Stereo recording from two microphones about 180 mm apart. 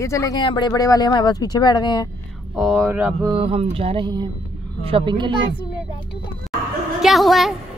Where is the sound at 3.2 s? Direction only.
30° right (ahead or behind).